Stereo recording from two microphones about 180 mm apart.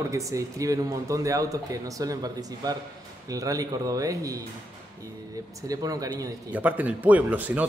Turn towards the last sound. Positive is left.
turn(degrees=-10)  # may be behind; listen again after turning